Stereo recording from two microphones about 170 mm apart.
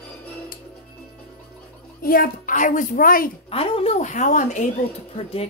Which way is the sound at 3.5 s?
35° left (ahead or behind).